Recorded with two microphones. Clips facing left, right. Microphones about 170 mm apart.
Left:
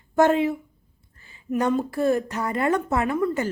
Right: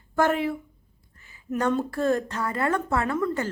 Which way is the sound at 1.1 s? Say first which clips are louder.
Left 2 dB; 30° left (ahead or behind).